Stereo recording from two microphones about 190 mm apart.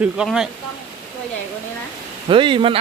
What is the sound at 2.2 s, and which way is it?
Speech, 25° right (ahead or behind).